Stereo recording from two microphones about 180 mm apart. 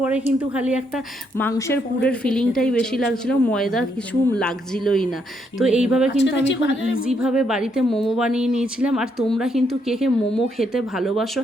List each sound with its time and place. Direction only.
0.0 s speech: 5° right (ahead or behind)
1.4 s a woman's voice: 15° left (ahead or behind); by 6.1 s 5° right (ahead or behind)
6.2 s speech: 85° left
7.0 s a woman's voice: 5° right (ahead or behind)